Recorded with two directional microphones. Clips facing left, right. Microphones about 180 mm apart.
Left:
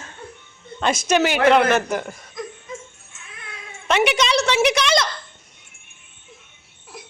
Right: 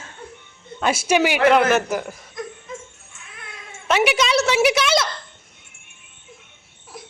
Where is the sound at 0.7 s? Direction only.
5° right (ahead or behind).